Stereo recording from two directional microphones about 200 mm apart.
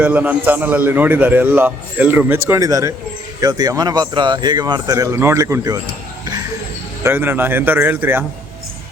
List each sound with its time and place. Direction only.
0.0 s a man's voice: 5° right (ahead or behind)
7.0 s a man's voice: 10° right (ahead or behind)